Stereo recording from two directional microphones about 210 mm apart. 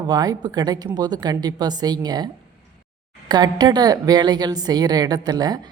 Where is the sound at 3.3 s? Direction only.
20° right (ahead or behind).